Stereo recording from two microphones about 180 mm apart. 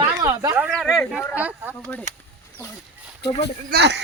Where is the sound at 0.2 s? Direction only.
20° right (ahead or behind).